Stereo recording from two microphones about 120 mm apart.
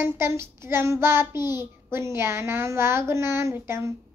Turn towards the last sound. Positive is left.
turn(degrees=-20)  # may be behind; listen again after turning